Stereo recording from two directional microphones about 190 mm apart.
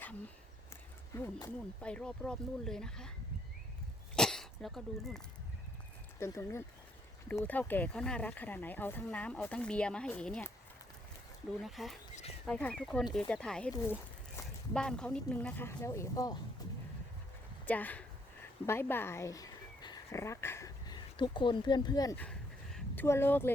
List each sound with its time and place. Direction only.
0.7 s speech: 15° left (ahead or behind)
4.1 s throat clearing: 5° left (ahead or behind)
6.1 s speech: 15° left (ahead or behind)
11.6 s speech: centre (ahead or behind)
14.7 s speech: 5° left (ahead or behind)
17.7 s speech: 10° left (ahead or behind)
22.2 s a sound: 5° left (ahead or behind)
23.0 s speech: 10° left (ahead or behind)